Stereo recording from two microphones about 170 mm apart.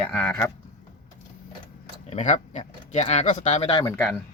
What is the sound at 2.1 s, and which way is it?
Speech, 45° left (ahead or behind).